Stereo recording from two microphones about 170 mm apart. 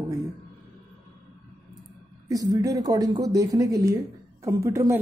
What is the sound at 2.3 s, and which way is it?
A woman's voice, 20° right (ahead or behind).